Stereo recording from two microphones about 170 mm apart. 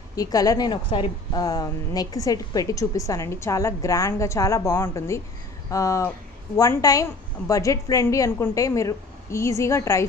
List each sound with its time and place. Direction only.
0.1 s a woman's voice: 20° left (ahead or behind)